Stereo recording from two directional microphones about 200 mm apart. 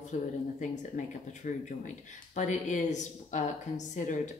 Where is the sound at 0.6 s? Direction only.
40° left (ahead or behind).